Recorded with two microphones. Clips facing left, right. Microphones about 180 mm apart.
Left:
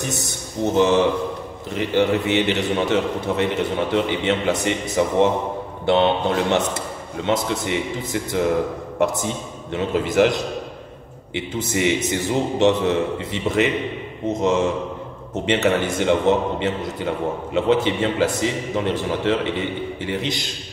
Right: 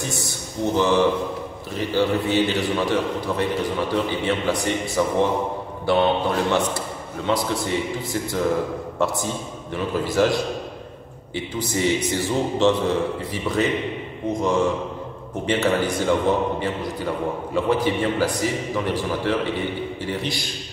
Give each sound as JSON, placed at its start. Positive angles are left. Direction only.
{"t": 0.0, "sound": "a man's voice", "side_deg": 20}